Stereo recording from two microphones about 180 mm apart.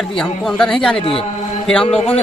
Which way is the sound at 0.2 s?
5° left (ahead or behind).